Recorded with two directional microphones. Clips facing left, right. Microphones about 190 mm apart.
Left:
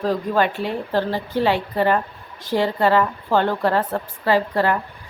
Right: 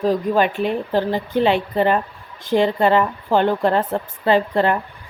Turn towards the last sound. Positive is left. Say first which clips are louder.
# right 2 dB
turn(degrees=-20)  # may be behind; listen again after turning